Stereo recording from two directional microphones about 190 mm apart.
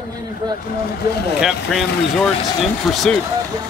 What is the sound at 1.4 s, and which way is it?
A man's voice, centre (ahead or behind).